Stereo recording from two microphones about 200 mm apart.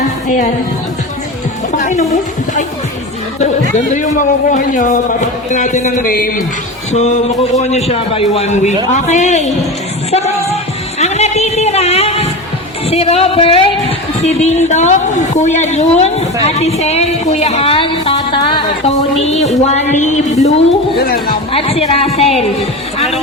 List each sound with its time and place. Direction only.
1.7 s speech: 40° left (ahead or behind)
3.4 s a woman's voice: 40° left (ahead or behind)
6.9 s a woman's voice: 35° left (ahead or behind)
10.1 s music: 30° left (ahead or behind)
11.0 s a sound: 35° left (ahead or behind)
12.9 s a woman's voice: 30° left (ahead or behind)
21.0 s speech: 50° left (ahead or behind)
21.5 s speech: 30° left (ahead or behind)